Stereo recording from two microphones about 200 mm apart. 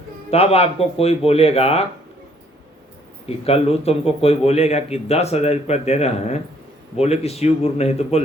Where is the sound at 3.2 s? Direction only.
30° left (ahead or behind).